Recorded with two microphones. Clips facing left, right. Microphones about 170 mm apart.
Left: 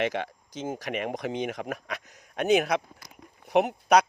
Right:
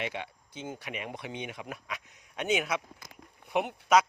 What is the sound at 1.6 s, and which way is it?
Speech, 50° left (ahead or behind).